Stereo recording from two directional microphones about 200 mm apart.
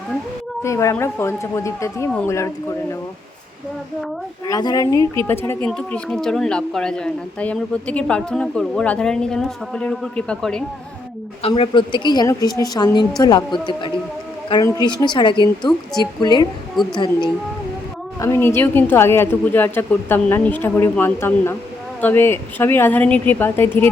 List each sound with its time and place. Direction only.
0.6 s a woman's voice: 15° left (ahead or behind)
4.4 s a woman's voice: 20° left (ahead or behind)
11.4 s a woman's voice: 30° left (ahead or behind)
16.8 s speech: centre (ahead or behind)
18.2 s a woman's voice: 10° left (ahead or behind)